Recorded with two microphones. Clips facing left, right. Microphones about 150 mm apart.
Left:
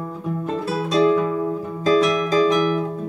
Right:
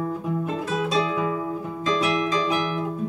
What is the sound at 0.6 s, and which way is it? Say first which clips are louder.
Music: left 8 dB; 35° left (ahead or behind).